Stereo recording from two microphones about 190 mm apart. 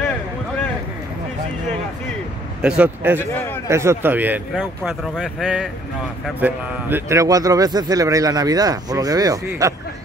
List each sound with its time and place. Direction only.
2.6 s a man's voice: 5° right (ahead or behind)